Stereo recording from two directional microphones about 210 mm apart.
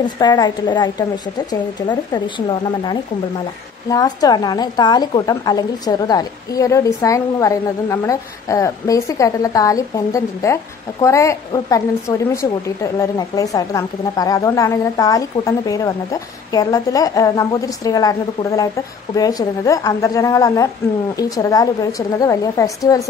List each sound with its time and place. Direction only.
0.0 s a woman's voice: 20° left (ahead or behind)
3.9 s a woman's voice: 20° left (ahead or behind)